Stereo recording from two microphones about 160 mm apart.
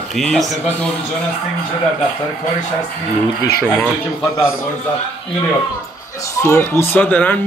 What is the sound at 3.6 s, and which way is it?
Speech, 10° left (ahead or behind).